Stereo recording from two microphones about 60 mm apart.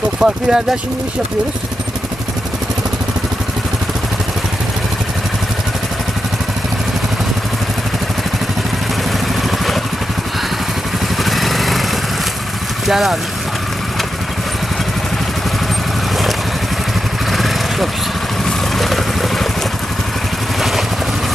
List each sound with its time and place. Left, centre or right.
0.2 s speech: centre
11.2 s lawn mower: centre
12.8 s speech: centre
17.3 s vehicle: centre